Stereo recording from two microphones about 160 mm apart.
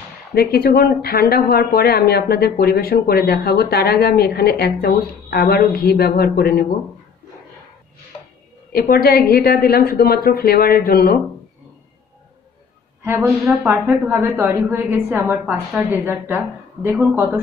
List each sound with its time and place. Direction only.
0.3 s speech: 75° left (ahead or behind)
8.7 s speech: 70° left (ahead or behind)
13.0 s a woman's voice: 15° right (ahead or behind)
13.4 s a woman's voice: 5° right (ahead or behind)